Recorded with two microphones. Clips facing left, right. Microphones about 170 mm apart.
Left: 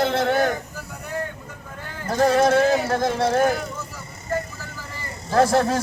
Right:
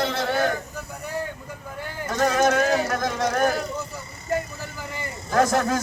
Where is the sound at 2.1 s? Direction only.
30° left (ahead or behind).